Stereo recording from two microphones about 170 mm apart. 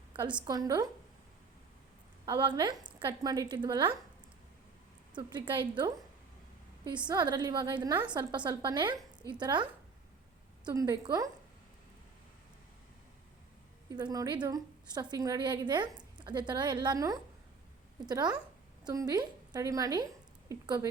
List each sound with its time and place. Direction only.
0.4 s a woman's voice: 20° right (ahead or behind)
2.2 s a woman's voice: 25° right (ahead or behind)
5.1 s a woman's voice: 25° right (ahead or behind)
7.1 s a woman's voice: 25° right (ahead or behind)
10.7 s a woman's voice: 20° right (ahead or behind)
13.9 s a woman's voice: 25° right (ahead or behind)